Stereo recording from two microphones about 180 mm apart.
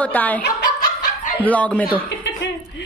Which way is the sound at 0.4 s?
70° left (ahead or behind).